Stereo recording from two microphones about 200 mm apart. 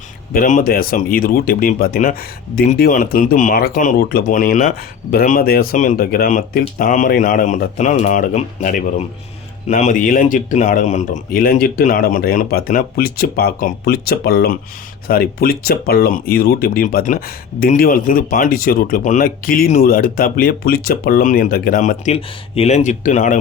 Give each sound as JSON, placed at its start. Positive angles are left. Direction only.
{"t": 0.3, "sound": "speech", "side_deg": 40}